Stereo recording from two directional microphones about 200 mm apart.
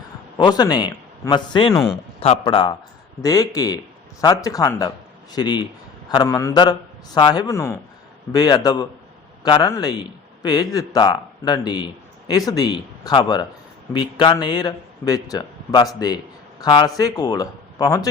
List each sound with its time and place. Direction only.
0.3 s a man's voice: 20° left (ahead or behind)